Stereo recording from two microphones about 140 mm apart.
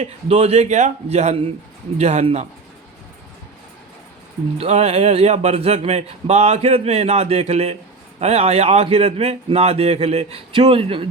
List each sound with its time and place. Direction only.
0.0 s a man's voice: 45° right (ahead or behind)
4.5 s a man's voice: 50° right (ahead or behind)